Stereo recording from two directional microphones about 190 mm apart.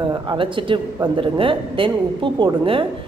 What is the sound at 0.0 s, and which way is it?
A woman's voice, 25° right (ahead or behind).